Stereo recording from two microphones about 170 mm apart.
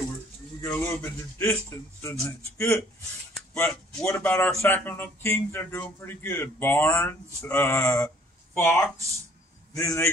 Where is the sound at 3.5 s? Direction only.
5° left (ahead or behind).